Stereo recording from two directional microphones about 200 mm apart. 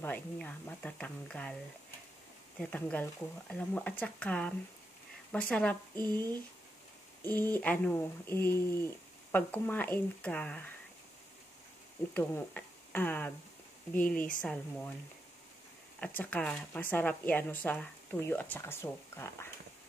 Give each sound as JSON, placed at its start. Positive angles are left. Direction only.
{"t": 0.0, "sound": "a woman's voice", "side_deg": 10}
{"t": 2.6, "sound": "a woman's voice", "side_deg": 10}
{"t": 5.9, "sound": "speech", "side_deg": -20}
{"t": 7.5, "sound": "a woman's voice", "side_deg": 10}
{"t": 9.3, "sound": "a woman's voice", "side_deg": 10}
{"t": 12.1, "sound": "a woman's voice", "side_deg": 10}
{"t": 16.2, "sound": "a woman's voice", "side_deg": 5}